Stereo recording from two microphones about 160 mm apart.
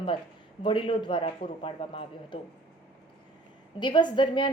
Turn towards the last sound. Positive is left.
turn(degrees=30)  # may be behind; listen again after turning